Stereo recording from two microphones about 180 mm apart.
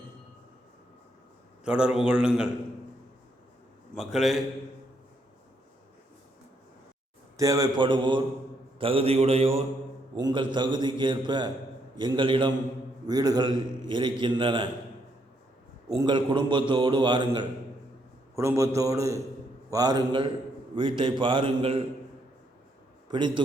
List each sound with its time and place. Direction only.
1.6 s a man's voice: 5° right (ahead or behind)
3.9 s a man's voice: centre (ahead or behind)
7.3 s a man's voice: 20° right (ahead or behind); by 9.5 s 35° right (ahead or behind)
10.2 s a man's voice: 25° right (ahead or behind)
16.0 s a man's voice: 25° right (ahead or behind)
23.0 s a man's voice: 25° right (ahead or behind)